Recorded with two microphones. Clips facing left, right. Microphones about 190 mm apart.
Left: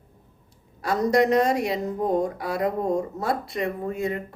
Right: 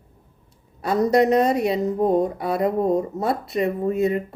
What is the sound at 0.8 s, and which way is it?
Speech, 25° right (ahead or behind).